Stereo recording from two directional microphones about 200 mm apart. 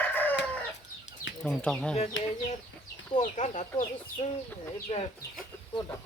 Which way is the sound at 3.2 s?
35° left (ahead or behind).